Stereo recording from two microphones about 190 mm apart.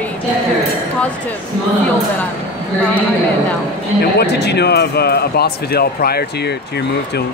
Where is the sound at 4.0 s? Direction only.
60° left (ahead or behind).